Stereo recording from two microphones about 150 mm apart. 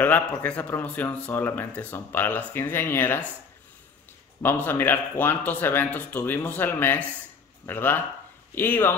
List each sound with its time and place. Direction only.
0.0 s speech: 10° left (ahead or behind)
4.4 s speech: 15° left (ahead or behind)